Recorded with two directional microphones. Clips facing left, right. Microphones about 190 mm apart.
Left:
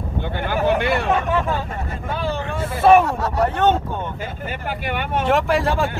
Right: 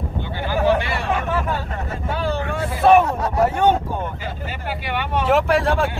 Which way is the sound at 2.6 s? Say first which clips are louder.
Left 1 dB; centre (ahead or behind).